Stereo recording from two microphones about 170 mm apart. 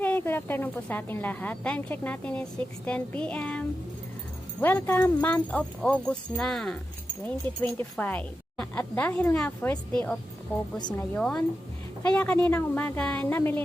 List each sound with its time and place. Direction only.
0.0 s a woman's voice: 10° left (ahead or behind)
4.6 s a woman's voice: 10° left (ahead or behind)
10.8 s speech: 25° left (ahead or behind)
11.1 s a woman's voice: 5° left (ahead or behind)